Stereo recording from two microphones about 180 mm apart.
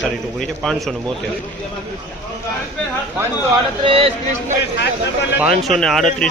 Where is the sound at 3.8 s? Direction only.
30° right (ahead or behind).